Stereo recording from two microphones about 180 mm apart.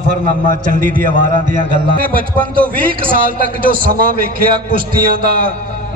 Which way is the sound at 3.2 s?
50° right (ahead or behind).